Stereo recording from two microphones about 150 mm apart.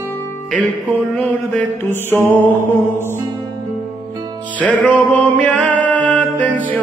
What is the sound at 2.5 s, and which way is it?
Mantra, 15° left (ahead or behind).